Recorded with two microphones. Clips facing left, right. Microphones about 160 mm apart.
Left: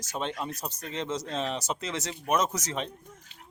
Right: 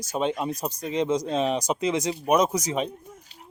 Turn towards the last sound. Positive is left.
turn(degrees=-10)  # may be behind; listen again after turning